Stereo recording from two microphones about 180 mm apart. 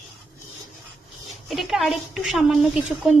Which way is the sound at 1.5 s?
Centre (ahead or behind).